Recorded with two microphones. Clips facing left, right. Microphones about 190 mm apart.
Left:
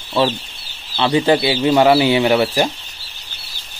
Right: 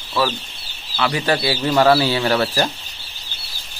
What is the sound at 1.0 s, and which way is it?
Speech, 25° left (ahead or behind).